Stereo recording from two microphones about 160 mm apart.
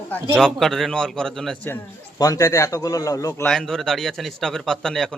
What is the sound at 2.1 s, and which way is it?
A man's voice, 20° left (ahead or behind).